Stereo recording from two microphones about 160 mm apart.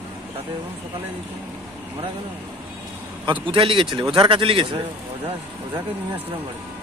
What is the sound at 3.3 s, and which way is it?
Speech, 35° right (ahead or behind).